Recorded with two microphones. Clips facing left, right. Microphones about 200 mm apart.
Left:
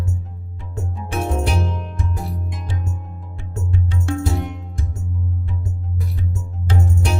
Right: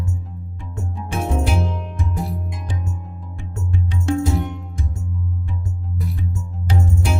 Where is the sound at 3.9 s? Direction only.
15° right (ahead or behind).